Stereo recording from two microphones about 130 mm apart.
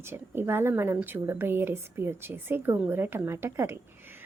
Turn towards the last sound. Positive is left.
turn(degrees=-20)  # may be behind; listen again after turning